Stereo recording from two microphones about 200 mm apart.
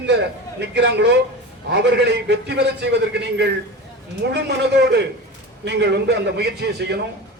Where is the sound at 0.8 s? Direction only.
60° right (ahead or behind).